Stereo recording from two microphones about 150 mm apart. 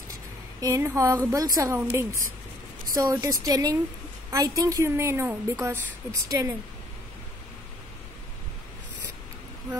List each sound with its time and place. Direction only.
0.6 s a woman's voice: 20° right (ahead or behind)